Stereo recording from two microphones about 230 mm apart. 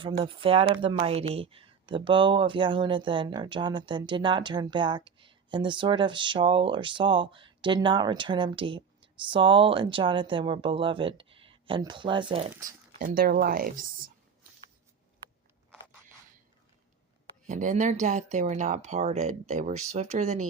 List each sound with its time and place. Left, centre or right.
0.0 s speech: right
13.0 s speech: right
17.4 s speech: right